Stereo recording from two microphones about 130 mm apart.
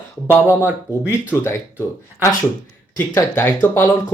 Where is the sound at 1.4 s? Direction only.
20° left (ahead or behind).